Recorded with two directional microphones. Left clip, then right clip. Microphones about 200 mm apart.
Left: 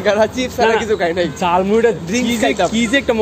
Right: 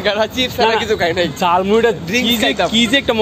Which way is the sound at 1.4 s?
10° right (ahead or behind).